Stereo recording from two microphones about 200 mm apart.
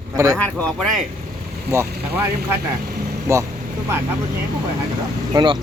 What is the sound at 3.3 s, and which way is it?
Speech, 15° right (ahead or behind).